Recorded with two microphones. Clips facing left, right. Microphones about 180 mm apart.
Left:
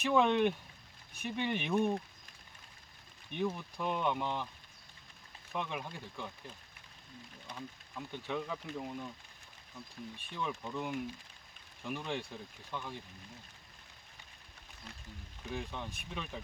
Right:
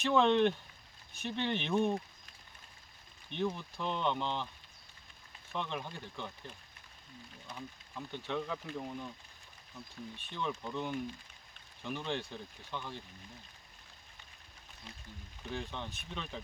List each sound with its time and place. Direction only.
0.0 s speech: 10° left (ahead or behind)
3.3 s speech: 10° left (ahead or behind)
5.5 s speech: 10° left (ahead or behind)
7.4 s speech: 5° right (ahead or behind)
8.1 s speech: 5° left (ahead or behind)
10.7 s speech: 5° left (ahead or behind)
15.4 s speech: 5° left (ahead or behind)